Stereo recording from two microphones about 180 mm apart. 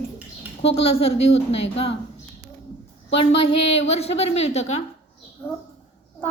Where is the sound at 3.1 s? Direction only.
35° left (ahead or behind).